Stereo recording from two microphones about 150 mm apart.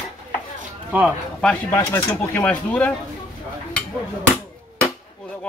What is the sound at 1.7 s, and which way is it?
Speech, 15° left (ahead or behind).